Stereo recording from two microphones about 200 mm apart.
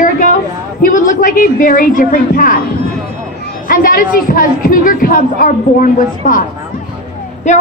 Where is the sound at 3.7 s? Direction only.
45° left (ahead or behind).